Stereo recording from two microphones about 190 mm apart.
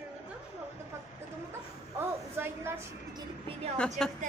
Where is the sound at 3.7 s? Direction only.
5° left (ahead or behind).